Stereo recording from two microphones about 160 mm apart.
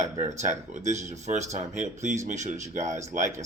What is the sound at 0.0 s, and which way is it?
Speech, 45° right (ahead or behind).